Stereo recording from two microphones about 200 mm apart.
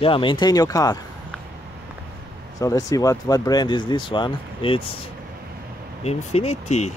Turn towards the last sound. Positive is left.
turn(degrees=35)  # may be behind; listen again after turning